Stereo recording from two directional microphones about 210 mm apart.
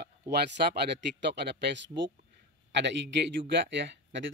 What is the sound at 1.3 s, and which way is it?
A man's voice, 55° right (ahead or behind).